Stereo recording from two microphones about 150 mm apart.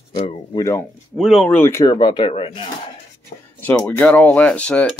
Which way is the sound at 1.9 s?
30° left (ahead or behind).